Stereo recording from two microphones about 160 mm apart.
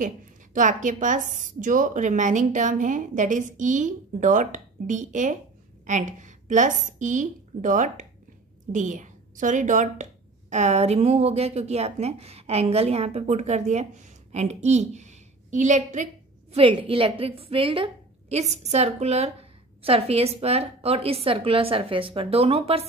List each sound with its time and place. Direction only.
0.0 s a woman's voice: 55° right (ahead or behind)
16.5 s a woman's voice: 35° right (ahead or behind)